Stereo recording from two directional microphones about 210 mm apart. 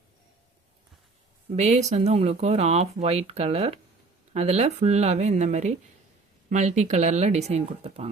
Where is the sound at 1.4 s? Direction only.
30° right (ahead or behind).